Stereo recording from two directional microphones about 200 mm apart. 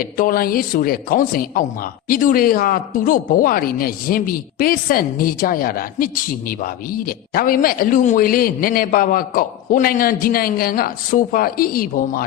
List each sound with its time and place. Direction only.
0.0 s a woman's voice: 45° left (ahead or behind)